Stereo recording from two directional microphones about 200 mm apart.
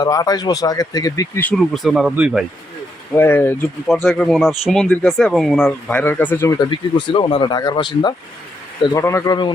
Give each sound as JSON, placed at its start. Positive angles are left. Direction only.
{"t": 0.0, "sound": "speech", "side_deg": 20}
{"t": 3.1, "sound": "speech", "side_deg": 10}
{"t": 6.7, "sound": "speech", "side_deg": 25}